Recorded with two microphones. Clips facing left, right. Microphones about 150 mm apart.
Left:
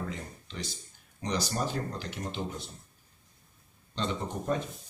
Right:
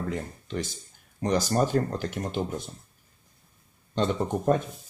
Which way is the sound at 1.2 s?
50° right (ahead or behind).